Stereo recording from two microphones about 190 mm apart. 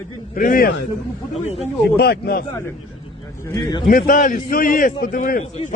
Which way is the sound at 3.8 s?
45° left (ahead or behind).